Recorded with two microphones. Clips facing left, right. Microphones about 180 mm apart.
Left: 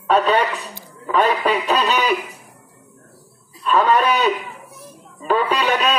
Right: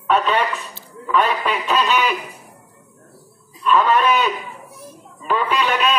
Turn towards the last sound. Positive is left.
turn(degrees=35)  # may be behind; listen again after turning